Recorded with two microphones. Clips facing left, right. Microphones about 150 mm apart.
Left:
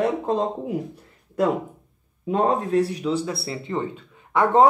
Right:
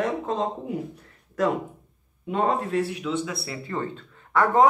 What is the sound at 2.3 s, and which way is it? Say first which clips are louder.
Speech: left 3 dB; 40° left (ahead or behind).